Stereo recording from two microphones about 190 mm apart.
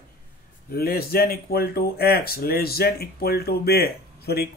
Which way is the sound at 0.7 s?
55° left (ahead or behind).